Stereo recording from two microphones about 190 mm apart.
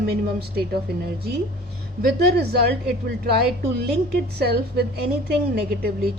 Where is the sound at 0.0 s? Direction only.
55° right (ahead or behind).